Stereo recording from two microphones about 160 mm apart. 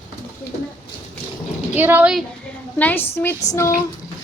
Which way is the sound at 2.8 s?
10° left (ahead or behind).